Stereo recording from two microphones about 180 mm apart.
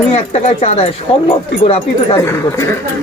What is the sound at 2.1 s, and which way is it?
Speech, 15° left (ahead or behind).